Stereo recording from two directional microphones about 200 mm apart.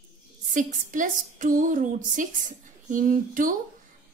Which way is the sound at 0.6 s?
40° right (ahead or behind).